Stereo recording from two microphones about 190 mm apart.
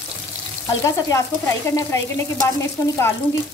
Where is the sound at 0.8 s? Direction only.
15° left (ahead or behind).